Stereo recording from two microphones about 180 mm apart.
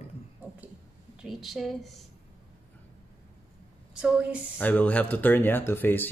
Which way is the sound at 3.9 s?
5° right (ahead or behind).